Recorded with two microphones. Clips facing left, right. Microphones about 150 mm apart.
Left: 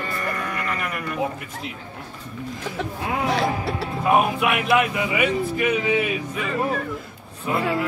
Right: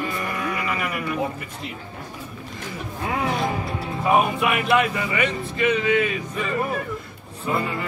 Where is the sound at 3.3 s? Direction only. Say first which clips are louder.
Left 2 dB; 80° left.